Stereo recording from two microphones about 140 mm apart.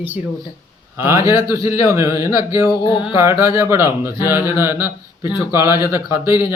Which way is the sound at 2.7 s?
35° left (ahead or behind).